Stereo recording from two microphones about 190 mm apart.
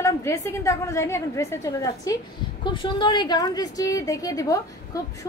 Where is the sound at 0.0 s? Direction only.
15° left (ahead or behind).